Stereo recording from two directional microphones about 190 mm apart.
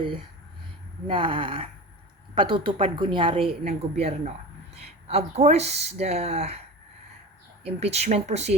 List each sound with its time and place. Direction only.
1.0 s a woman's voice: 25° right (ahead or behind)
7.6 s speech: 35° right (ahead or behind)